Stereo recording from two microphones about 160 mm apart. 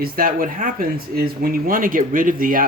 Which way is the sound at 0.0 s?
65° right (ahead or behind).